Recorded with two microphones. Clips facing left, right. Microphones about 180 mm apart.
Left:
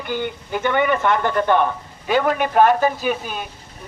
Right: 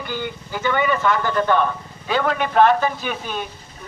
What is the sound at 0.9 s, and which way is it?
A man's voice, 20° left (ahead or behind).